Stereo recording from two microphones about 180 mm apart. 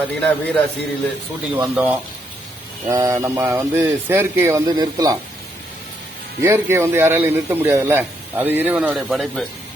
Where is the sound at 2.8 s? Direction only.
15° right (ahead or behind).